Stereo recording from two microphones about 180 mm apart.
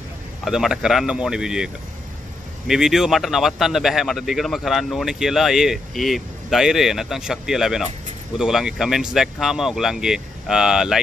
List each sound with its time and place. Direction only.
0.5 s speech: centre (ahead or behind)
2.7 s speech: centre (ahead or behind)